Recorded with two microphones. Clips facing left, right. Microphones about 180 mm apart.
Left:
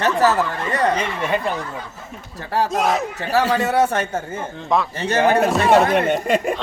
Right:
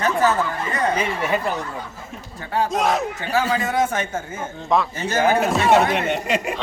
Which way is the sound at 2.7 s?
Centre (ahead or behind).